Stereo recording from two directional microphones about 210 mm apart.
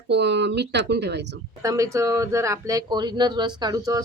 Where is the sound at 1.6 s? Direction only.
15° right (ahead or behind).